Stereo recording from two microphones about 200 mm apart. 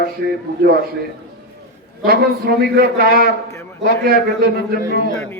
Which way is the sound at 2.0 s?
50° right (ahead or behind).